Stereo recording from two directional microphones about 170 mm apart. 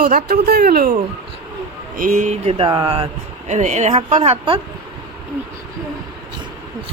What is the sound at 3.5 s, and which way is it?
Speech, 40° right (ahead or behind).